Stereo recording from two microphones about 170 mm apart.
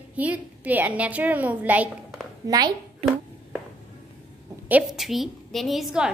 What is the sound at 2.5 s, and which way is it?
Speech, 25° right (ahead or behind).